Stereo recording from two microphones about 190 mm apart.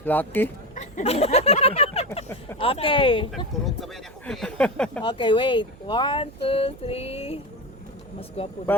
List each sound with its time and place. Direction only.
0.0 s speech: 10° left (ahead or behind)
0.9 s speech: 30° left (ahead or behind)
3.3 s speech: centre (ahead or behind)
5.0 s speech: 25° left (ahead or behind)
8.4 s speech: 30° left (ahead or behind)